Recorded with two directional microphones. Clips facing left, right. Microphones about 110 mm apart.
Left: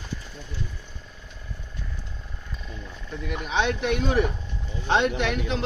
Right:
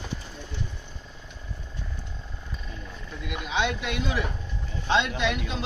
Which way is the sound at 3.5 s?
45° left (ahead or behind).